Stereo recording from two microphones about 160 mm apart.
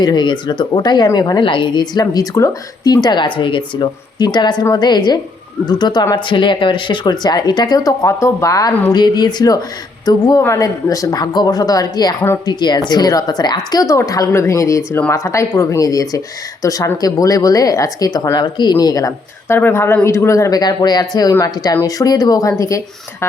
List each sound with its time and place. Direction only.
0.0 s a woman's voice: 25° left (ahead or behind)
12.5 s a woman's voice: 25° left (ahead or behind)